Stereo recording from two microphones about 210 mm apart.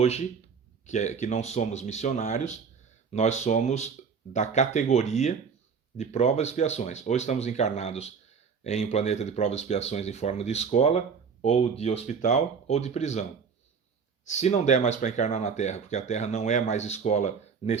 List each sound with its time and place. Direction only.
0.0 s speech: 30° left (ahead or behind)
14.3 s speech: 30° left (ahead or behind)